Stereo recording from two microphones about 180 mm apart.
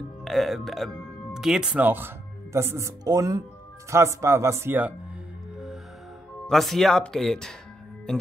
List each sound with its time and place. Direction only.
0.2 s speech: centre (ahead or behind)
6.4 s speech: centre (ahead or behind)